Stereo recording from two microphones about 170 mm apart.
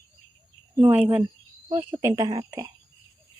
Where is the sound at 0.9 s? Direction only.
10° right (ahead or behind).